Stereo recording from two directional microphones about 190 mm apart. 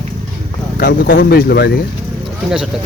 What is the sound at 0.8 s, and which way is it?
Speech, 55° left (ahead or behind).